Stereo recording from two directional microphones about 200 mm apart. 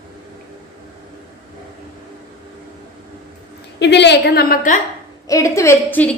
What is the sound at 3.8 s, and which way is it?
A woman's voice, 60° left (ahead or behind).